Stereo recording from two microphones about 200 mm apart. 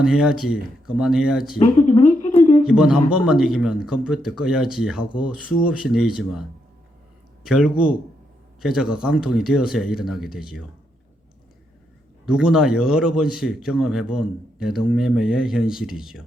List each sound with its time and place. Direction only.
0.0 s speech: 5° right (ahead or behind)
1.5 s a sound: 30° left (ahead or behind)
2.6 s speech: 5° right (ahead or behind)
7.4 s speech: 5° right (ahead or behind)
12.2 s speech: 5° right (ahead or behind)